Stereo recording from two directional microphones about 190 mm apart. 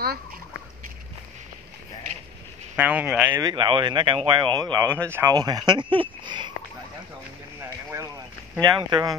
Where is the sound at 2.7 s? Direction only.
10° right (ahead or behind).